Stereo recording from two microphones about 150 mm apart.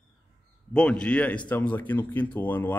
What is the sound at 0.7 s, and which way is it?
Speech, 5° left (ahead or behind).